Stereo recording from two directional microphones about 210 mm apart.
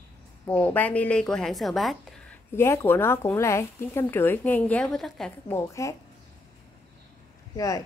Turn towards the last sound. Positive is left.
turn(degrees=15)  # may be behind; listen again after turning